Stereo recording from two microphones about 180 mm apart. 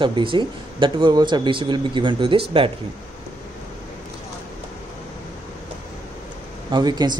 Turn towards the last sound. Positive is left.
turn(degrees=-25)  # may be behind; listen again after turning